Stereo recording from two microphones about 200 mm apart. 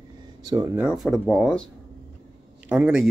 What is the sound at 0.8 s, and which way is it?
Speech, centre (ahead or behind).